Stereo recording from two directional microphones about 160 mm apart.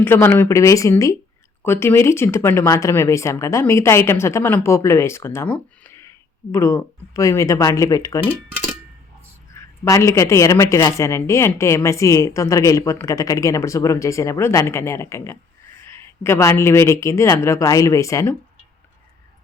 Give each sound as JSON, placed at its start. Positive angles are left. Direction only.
{"t": 0.0, "sound": "speech", "side_deg": 15}
{"t": 9.6, "sound": "speech", "side_deg": 15}